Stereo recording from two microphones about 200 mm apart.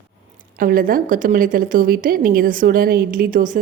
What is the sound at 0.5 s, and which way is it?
A woman's voice, 45° right (ahead or behind).